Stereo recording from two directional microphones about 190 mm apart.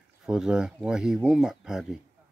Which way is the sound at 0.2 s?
5° right (ahead or behind).